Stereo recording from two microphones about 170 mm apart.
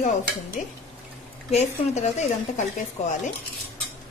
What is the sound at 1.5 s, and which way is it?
A woman's voice, 40° left (ahead or behind).